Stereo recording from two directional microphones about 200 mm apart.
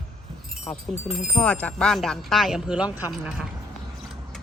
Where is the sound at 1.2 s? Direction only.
5° left (ahead or behind).